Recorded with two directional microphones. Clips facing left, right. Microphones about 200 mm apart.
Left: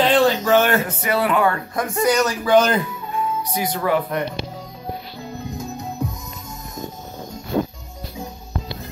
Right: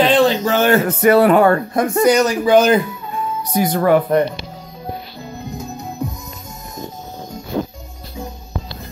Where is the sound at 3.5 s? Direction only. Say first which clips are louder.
Right 9 dB; 45° right (ahead or behind).